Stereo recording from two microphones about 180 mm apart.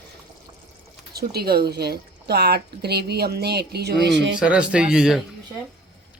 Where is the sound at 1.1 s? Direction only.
60° right (ahead or behind); by 4.3 s 80° right.